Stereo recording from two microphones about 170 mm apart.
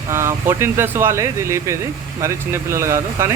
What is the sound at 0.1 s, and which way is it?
Speech, 15° right (ahead or behind).